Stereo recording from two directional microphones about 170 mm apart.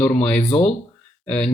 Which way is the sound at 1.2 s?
5° left (ahead or behind).